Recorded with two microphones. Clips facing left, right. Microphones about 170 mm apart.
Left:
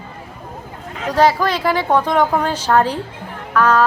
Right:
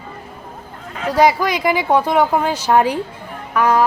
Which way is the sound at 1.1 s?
10° right (ahead or behind).